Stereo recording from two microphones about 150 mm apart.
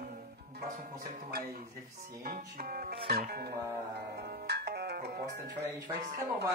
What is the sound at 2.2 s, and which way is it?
Music, 80° right.